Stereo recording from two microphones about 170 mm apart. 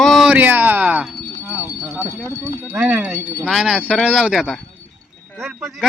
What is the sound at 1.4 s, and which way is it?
Wind chime, 15° left (ahead or behind).